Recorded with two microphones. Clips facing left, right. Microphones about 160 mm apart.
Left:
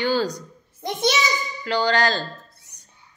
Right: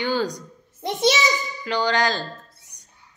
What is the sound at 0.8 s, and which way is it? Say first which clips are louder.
Speech: right 2 dB; 25° right (ahead or behind).